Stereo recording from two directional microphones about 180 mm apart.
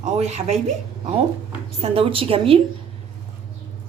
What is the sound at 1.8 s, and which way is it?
Speech, 30° right (ahead or behind).